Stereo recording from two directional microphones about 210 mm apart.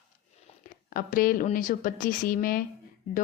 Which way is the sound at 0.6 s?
40° left (ahead or behind).